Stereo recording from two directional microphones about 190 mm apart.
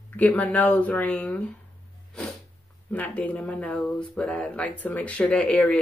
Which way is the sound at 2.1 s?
5° left (ahead or behind).